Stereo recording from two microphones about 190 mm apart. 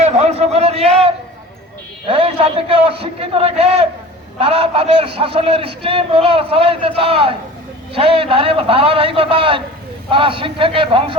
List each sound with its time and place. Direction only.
0.0 s a man's voice: 35° right (ahead or behind)